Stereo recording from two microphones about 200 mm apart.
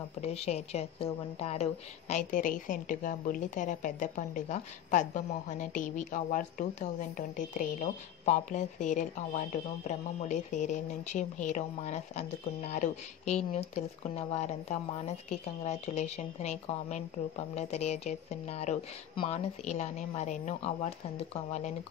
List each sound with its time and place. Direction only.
0.2 s a woman's voice: 30° left (ahead or behind)